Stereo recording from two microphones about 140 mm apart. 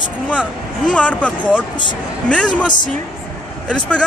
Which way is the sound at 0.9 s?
10° left (ahead or behind).